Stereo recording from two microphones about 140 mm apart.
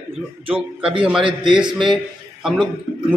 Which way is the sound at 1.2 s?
35° right (ahead or behind).